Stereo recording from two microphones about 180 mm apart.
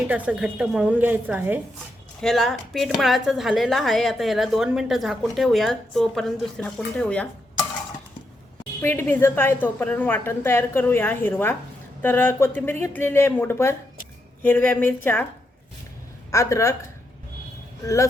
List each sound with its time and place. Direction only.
0.1 s a woman's voice: 5° right (ahead or behind)
2.2 s a woman's voice: centre (ahead or behind)
8.8 s a woman's voice: 15° left (ahead or behind)
16.3 s a woman's voice: 15° left (ahead or behind)
17.8 s a woman's voice: 15° left (ahead or behind)